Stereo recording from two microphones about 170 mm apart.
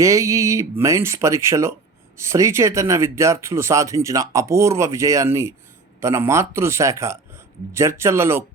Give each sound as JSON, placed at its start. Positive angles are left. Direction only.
{"t": 0.0, "sound": "speech", "side_deg": -20}